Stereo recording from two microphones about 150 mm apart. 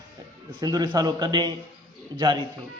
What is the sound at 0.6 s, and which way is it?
A man's voice, 25° right (ahead or behind).